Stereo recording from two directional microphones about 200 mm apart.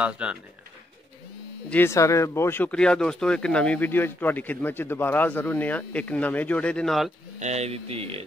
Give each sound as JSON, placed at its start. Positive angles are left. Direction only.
{"t": 0.0, "sound": "speech", "side_deg": -5}
{"t": 1.7, "sound": "speech", "side_deg": 10}
{"t": 7.3, "sound": "speech", "side_deg": -35}